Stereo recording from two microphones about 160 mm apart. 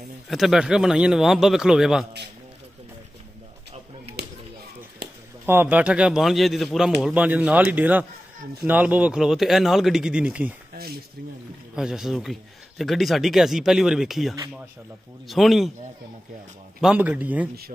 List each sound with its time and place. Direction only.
0.3 s a man's voice: centre (ahead or behind)
5.4 s a man's voice: 10° right (ahead or behind)
10.7 s a sound: 75° right (ahead or behind)
11.7 s a man's voice: 5° right (ahead or behind)
16.8 s a man's voice: 10° right (ahead or behind)